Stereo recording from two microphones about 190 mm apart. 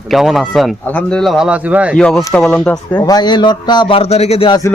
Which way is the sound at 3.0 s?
20° left (ahead or behind).